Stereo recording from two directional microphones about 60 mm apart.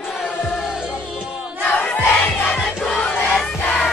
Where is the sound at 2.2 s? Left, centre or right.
Left.